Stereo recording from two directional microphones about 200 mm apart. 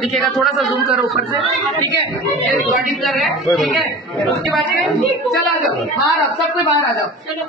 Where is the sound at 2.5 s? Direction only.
Centre (ahead or behind).